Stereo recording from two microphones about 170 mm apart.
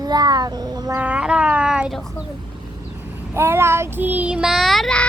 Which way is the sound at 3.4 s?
15° right (ahead or behind).